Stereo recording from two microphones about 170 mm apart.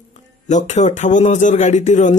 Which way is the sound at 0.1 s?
45° left (ahead or behind).